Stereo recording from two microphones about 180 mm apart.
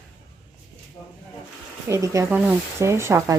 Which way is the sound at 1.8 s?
15° right (ahead or behind).